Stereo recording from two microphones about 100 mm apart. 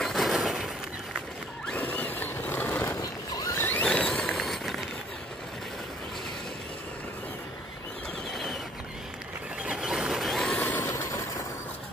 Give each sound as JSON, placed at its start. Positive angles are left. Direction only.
{"t": 0.0, "sound": "a sound", "side_deg": 0}
{"t": 1.8, "sound": "vehicle", "side_deg": 15}
{"t": 3.5, "sound": "zipper", "side_deg": 20}
{"t": 3.8, "sound": "a sound", "side_deg": 10}
{"t": 9.6, "sound": "vehicle", "side_deg": -5}
{"t": 10.6, "sound": "vehicle", "side_deg": 20}